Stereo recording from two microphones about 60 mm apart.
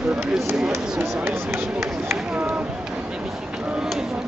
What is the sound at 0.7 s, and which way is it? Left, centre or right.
Speech, right.